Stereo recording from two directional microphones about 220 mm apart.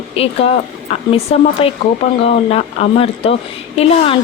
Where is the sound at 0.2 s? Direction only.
25° left (ahead or behind).